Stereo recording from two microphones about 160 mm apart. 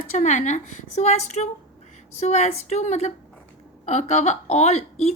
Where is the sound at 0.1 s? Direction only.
50° left (ahead or behind).